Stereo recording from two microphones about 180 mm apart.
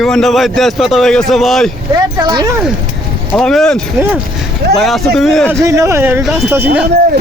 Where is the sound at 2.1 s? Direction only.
20° right (ahead or behind).